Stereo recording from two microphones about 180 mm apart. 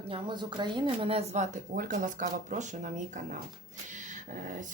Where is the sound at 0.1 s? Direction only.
25° right (ahead or behind).